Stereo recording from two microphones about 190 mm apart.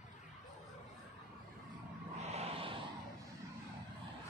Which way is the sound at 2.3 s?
30° right (ahead or behind).